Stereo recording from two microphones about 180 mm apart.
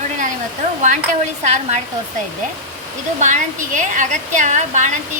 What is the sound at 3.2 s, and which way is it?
Speech, 45° right (ahead or behind).